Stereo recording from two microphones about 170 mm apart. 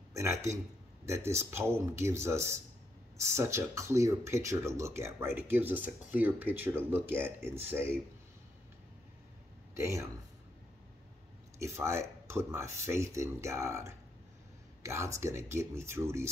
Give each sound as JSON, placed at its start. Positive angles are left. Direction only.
{"t": 0.1, "sound": "speech", "side_deg": -15}
{"t": 9.8, "sound": "speech", "side_deg": -15}
{"t": 11.5, "sound": "speech", "side_deg": -15}